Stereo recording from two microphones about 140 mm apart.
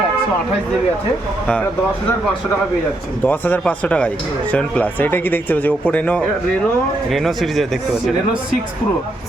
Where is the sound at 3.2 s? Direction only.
10° left (ahead or behind).